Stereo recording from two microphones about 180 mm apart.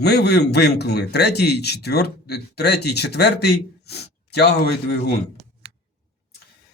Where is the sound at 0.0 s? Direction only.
65° left (ahead or behind).